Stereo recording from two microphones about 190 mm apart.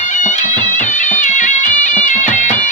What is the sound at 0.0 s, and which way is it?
Music, 40° left (ahead or behind).